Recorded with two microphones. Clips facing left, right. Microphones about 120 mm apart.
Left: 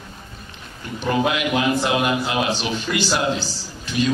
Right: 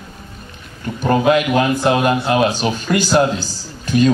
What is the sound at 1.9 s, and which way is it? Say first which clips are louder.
A man's voice: right 6 dB; 45° right (ahead or behind).